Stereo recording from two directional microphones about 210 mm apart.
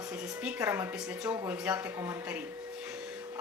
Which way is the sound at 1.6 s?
5° right (ahead or behind).